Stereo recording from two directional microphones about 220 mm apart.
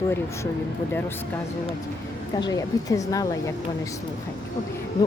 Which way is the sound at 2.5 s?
15° left (ahead or behind).